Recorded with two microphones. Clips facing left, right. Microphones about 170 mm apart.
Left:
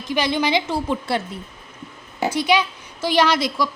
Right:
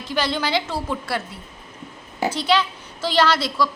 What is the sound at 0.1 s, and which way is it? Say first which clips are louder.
A woman's voice: left 3 dB; 15° left (ahead or behind).